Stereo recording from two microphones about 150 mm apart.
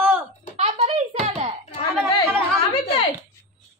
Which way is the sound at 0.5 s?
45° right (ahead or behind).